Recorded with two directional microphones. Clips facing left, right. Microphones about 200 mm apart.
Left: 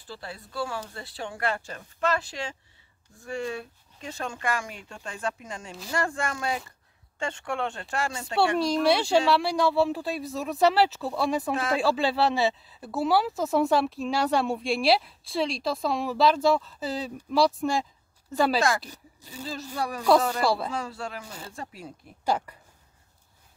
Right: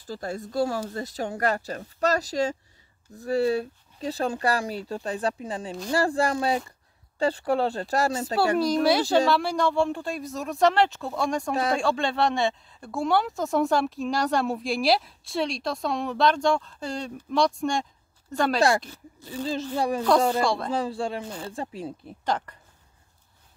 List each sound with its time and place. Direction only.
0.0 s speech: 45° right (ahead or behind)
8.5 s speech: centre (ahead or behind)
19.7 s speech: 30° right (ahead or behind)
20.4 s speech: 5° left (ahead or behind)
20.7 s speech: 30° right (ahead or behind)
22.2 s speech: 10° left (ahead or behind)